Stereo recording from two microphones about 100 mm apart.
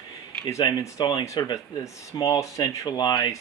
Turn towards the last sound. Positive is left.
turn(degrees=45)  # may be behind; listen again after turning